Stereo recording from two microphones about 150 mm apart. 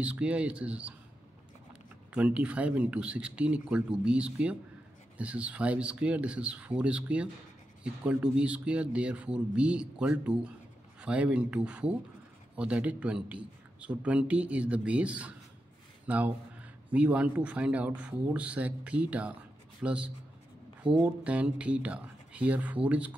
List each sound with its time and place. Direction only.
0.0 s speech: 5° right (ahead or behind)